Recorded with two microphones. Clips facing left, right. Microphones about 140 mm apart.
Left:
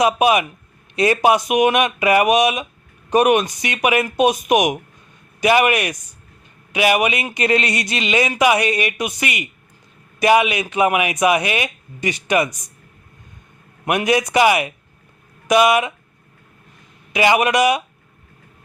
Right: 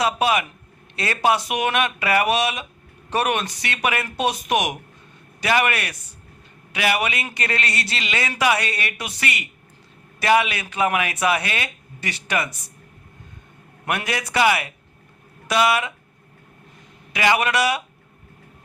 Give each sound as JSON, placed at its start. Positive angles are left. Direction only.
{"t": 0.0, "sound": "speech", "side_deg": 15}
{"t": 13.8, "sound": "a man's voice", "side_deg": 15}
{"t": 17.1, "sound": "speech", "side_deg": 20}